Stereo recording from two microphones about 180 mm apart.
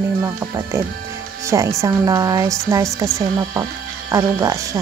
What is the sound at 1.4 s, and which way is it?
A woman's voice, 15° right (ahead or behind).